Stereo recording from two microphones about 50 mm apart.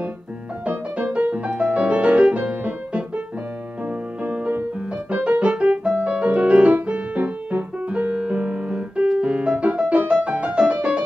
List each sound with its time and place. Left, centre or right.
1.1 s music: right
4.2 s music: right
7.2 s piano: right
9.9 s music: right